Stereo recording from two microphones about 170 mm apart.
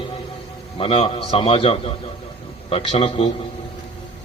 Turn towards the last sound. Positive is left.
turn(degrees=35)  # may be behind; listen again after turning